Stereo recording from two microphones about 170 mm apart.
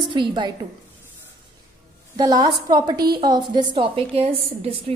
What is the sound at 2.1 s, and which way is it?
A woman's voice, 25° right (ahead or behind).